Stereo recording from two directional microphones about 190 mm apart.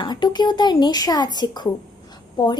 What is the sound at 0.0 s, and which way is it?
Speech, 20° left (ahead or behind).